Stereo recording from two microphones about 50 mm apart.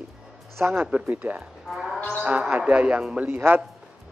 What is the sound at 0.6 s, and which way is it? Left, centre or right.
Speech, right.